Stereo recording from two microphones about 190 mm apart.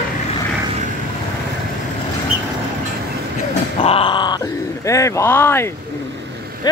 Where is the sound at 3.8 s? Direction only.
30° left (ahead or behind); by 5.7 s 10° left (ahead or behind).